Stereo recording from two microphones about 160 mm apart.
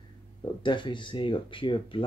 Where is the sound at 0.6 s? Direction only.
30° left (ahead or behind).